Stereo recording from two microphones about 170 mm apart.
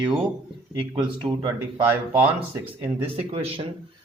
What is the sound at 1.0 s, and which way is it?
Speech, 25° right (ahead or behind).